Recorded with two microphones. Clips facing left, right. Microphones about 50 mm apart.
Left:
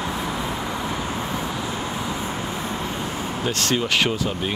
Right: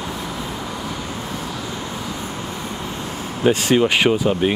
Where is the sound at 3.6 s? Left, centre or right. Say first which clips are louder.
Right 2 dB; centre.